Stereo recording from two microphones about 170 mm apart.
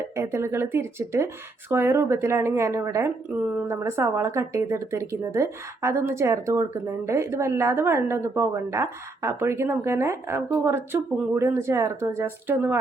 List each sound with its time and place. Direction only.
0.0 s speech: 15° right (ahead or behind)